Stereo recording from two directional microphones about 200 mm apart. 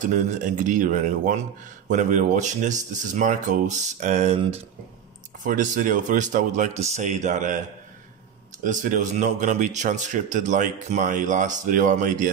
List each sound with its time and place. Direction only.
0.0 s speech: 40° right (ahead or behind)
8.6 s speech: 40° right (ahead or behind)